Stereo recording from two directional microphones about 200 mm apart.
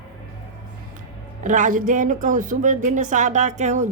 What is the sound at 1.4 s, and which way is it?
Speech, 40° right (ahead or behind).